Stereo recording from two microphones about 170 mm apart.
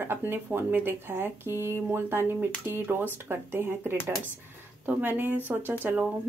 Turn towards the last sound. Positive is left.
turn(degrees=-10)  # may be behind; listen again after turning